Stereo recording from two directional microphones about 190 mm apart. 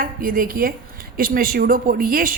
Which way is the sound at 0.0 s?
50° right (ahead or behind).